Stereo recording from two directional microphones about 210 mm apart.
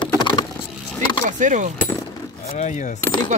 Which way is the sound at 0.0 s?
20° left (ahead or behind).